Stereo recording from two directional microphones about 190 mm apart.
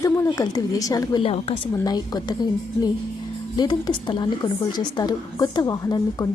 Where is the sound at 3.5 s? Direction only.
20° left (ahead or behind).